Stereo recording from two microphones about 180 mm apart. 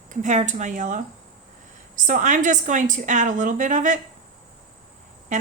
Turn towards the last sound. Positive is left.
turn(degrees=-45)  # may be behind; listen again after turning